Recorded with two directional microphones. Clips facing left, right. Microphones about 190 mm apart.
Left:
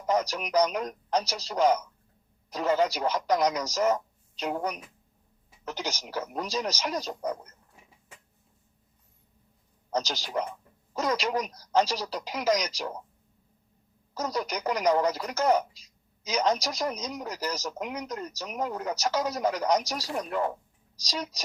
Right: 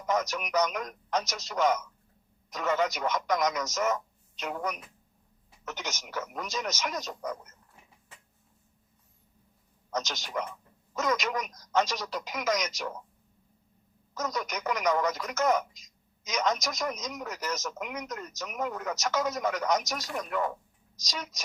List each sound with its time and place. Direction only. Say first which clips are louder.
0.0 s speech: left 2 dB; 30° left (ahead or behind)
9.9 s speech: left 3 dB; 35° left (ahead or behind)
14.1 s speech: left 3 dB; 30° left (ahead or behind)